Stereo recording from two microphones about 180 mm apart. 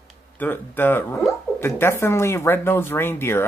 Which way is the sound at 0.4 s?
10° left (ahead or behind).